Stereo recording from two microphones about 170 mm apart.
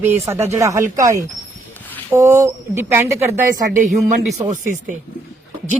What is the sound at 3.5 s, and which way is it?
A woman's voice, 55° right (ahead or behind).